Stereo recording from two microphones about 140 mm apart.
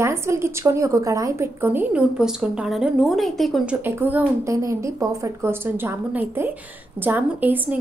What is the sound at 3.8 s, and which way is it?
A woman's voice, 15° right (ahead or behind).